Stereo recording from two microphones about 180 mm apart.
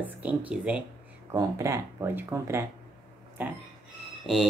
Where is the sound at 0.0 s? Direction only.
10° right (ahead or behind).